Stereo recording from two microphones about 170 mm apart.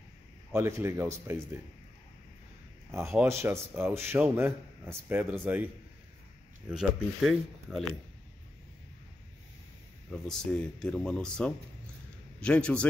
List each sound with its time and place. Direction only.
0.5 s a man's voice: 15° right (ahead or behind)
3.3 s a man's voice: 15° right (ahead or behind)
6.7 s speech: 5° right (ahead or behind)
10.0 s a man's voice: 5° left (ahead or behind)